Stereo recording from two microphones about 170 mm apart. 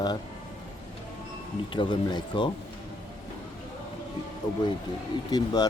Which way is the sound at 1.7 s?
30° left (ahead or behind).